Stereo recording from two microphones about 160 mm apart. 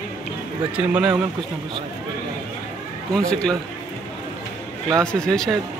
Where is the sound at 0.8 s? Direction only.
5° right (ahead or behind).